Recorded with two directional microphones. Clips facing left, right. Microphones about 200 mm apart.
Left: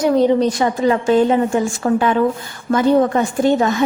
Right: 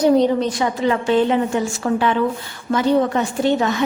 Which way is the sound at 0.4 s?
40° left (ahead or behind).